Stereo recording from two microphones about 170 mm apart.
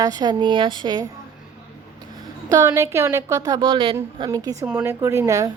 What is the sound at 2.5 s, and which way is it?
Speech, 20° right (ahead or behind).